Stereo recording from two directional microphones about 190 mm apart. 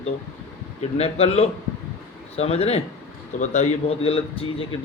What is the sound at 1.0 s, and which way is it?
Speech, 30° left (ahead or behind).